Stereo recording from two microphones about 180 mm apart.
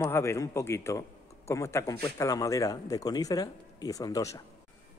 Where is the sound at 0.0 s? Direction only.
15° left (ahead or behind).